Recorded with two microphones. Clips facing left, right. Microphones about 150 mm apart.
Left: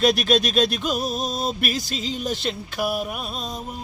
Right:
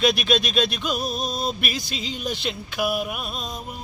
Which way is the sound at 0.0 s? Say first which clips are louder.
Left 2 dB; 40° left (ahead or behind).